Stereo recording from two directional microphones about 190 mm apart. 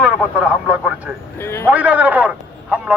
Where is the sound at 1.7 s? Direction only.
5° right (ahead or behind).